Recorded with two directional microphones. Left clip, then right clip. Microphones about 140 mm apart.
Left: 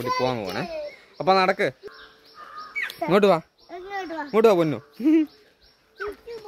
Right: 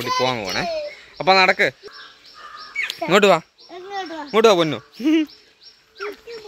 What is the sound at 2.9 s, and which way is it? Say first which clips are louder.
Speech: right 4 dB; centre (ahead or behind).